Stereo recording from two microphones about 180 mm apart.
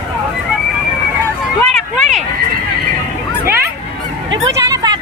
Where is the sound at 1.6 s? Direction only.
5° left (ahead or behind).